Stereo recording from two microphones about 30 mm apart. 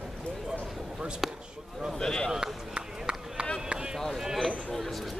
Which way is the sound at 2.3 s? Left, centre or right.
Right.